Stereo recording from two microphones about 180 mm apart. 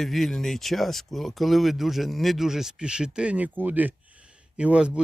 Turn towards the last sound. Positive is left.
turn(degrees=-5)  # may be behind; listen again after turning